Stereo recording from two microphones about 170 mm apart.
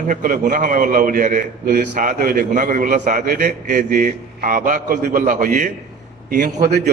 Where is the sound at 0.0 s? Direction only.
50° right (ahead or behind).